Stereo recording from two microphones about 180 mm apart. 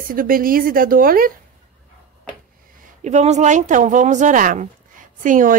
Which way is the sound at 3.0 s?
40° right (ahead or behind).